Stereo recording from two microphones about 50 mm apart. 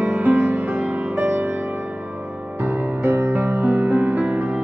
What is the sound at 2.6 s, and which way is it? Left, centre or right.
Music, right.